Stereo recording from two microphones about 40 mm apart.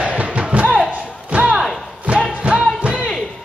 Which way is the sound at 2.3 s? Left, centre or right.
Right.